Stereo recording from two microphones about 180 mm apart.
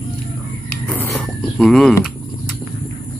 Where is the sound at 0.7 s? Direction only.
10° left (ahead or behind).